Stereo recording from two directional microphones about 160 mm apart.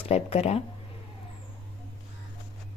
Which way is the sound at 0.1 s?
40° left (ahead or behind).